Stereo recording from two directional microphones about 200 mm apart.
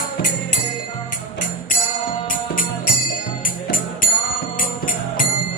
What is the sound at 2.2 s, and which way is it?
Music, 45° left (ahead or behind).